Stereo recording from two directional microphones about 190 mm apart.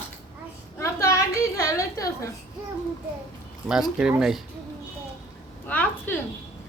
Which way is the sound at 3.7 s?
5° right (ahead or behind).